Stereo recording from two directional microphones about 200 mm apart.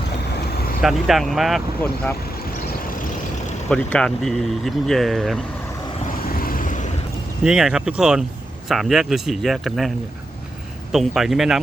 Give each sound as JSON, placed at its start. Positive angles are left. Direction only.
{"t": 0.8, "sound": "speech", "side_deg": 0}
{"t": 3.7, "sound": "speech", "side_deg": 5}
{"t": 6.1, "sound": "vehicle", "side_deg": 45}
{"t": 7.4, "sound": "speech", "side_deg": -5}
{"t": 10.9, "sound": "speech", "side_deg": 0}